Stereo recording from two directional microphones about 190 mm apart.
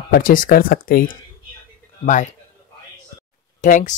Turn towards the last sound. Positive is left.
turn(degrees=40)  # may be behind; listen again after turning